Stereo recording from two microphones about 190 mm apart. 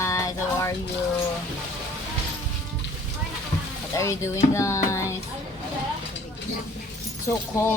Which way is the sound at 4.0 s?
15° left (ahead or behind).